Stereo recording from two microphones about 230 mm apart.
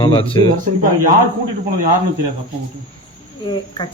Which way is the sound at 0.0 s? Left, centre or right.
Left.